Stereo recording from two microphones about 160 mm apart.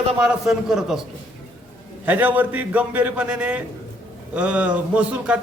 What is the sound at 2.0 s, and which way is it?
A man's voice, 10° right (ahead or behind).